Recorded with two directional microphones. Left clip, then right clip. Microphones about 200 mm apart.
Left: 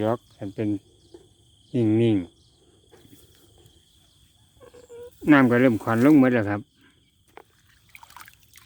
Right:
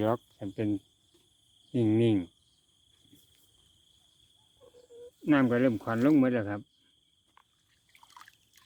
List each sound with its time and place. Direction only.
0.0 s speech: 10° right (ahead or behind)
1.7 s cricket: 5° right (ahead or behind)
5.2 s speech: 15° left (ahead or behind)
7.9 s trickle: 30° left (ahead or behind)